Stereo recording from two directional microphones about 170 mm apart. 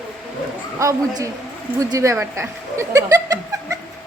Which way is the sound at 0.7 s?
20° right (ahead or behind).